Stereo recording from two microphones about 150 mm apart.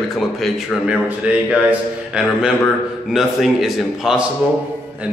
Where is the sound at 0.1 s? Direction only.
Centre (ahead or behind).